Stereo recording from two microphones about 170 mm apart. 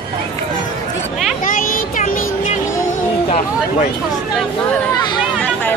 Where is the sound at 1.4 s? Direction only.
50° left (ahead or behind).